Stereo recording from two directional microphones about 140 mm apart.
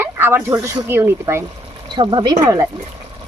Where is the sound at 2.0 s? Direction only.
35° right (ahead or behind).